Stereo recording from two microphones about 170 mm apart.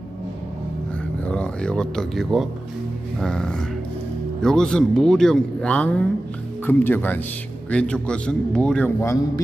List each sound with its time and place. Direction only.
1.3 s a man's voice: 5° left (ahead or behind)
9.0 s speech: 15° left (ahead or behind)